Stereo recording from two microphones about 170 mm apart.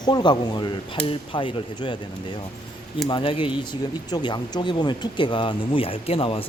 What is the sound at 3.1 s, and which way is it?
Speech, 30° left (ahead or behind).